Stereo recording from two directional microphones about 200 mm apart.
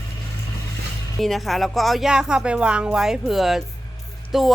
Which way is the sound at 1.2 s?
Centre (ahead or behind).